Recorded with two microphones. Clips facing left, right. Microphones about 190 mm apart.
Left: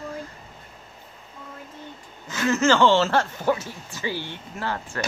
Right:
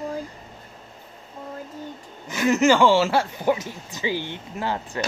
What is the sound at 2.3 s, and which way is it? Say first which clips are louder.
Speech: right 2 dB; 15° right (ahead or behind).